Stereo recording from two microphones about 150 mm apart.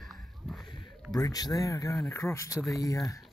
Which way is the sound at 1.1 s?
25° left (ahead or behind).